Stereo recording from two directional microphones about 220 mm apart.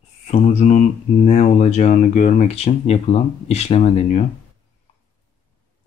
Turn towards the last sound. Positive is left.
turn(degrees=30)  # may be behind; listen again after turning